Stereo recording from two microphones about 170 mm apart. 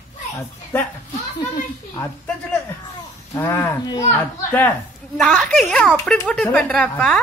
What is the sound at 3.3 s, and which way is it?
A man's voice, 15° left (ahead or behind).